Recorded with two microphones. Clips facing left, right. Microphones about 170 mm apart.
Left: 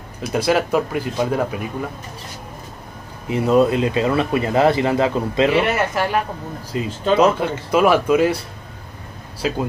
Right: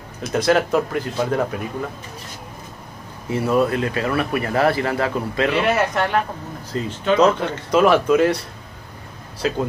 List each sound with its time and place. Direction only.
0.2 s speech: 10° left (ahead or behind)
3.3 s speech: 20° left (ahead or behind)
5.5 s speech: centre (ahead or behind)
6.7 s speech: 15° left (ahead or behind)
9.4 s speech: 5° left (ahead or behind)